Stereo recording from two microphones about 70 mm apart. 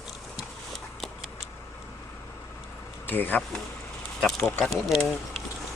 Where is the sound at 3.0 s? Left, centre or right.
Left.